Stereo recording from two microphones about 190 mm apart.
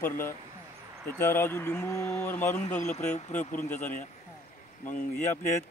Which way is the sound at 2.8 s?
35° left (ahead or behind).